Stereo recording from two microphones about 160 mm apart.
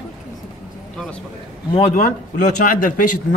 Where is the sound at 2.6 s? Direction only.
60° left (ahead or behind).